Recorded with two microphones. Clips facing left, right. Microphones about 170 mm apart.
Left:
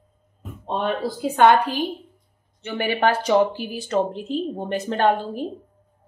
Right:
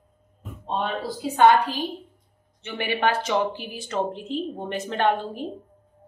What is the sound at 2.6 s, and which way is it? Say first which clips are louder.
A woman's voice: left 3 dB; 40° left (ahead or behind).